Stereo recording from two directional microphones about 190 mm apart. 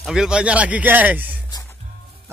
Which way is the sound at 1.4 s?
20° left (ahead or behind).